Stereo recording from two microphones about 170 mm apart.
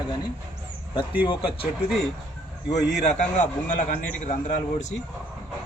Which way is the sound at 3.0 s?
45° left (ahead or behind).